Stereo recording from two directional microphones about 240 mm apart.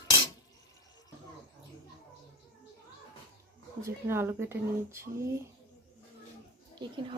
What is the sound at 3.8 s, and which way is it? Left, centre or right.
Speech, centre.